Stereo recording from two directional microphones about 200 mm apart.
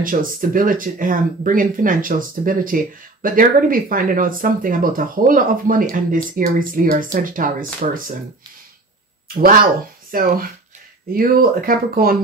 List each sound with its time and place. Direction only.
0.0 s speech: 45° right (ahead or behind)
9.3 s speech: 45° right (ahead or behind)